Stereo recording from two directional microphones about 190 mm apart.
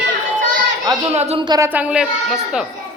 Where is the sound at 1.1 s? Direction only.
35° right (ahead or behind).